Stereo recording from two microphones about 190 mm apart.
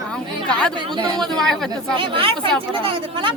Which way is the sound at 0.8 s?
25° right (ahead or behind).